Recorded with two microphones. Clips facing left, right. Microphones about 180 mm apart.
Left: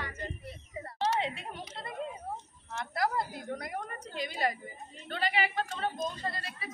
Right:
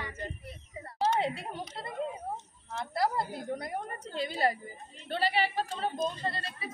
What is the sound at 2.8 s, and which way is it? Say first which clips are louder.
A woman's voice: right 1 dB; 30° right (ahead or behind).